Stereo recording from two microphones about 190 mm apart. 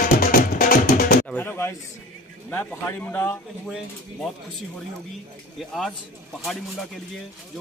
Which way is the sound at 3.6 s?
Centre (ahead or behind).